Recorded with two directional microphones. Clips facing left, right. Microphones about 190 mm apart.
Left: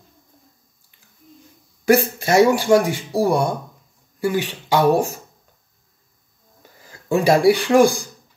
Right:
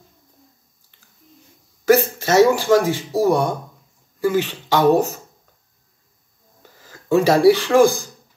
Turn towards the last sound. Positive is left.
turn(degrees=15)  # may be behind; listen again after turning